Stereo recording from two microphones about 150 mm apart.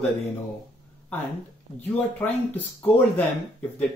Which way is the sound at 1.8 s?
10° left (ahead or behind).